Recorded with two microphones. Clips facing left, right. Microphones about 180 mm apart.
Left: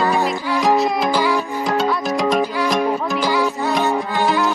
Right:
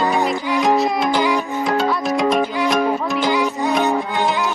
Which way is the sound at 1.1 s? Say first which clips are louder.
Even; 20° right (ahead or behind).